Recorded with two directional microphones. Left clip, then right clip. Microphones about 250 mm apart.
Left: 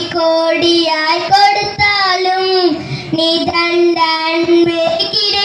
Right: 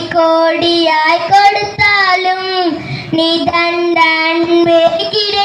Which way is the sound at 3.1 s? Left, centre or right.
Right.